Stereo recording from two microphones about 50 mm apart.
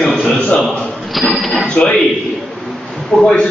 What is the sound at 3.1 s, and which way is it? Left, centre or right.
Speech, centre.